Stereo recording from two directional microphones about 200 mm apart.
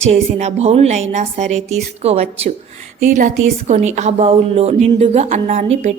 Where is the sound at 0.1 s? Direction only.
35° right (ahead or behind).